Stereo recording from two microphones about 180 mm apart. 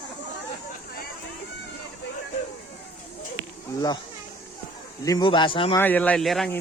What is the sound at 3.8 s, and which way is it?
Speech, 20° left (ahead or behind).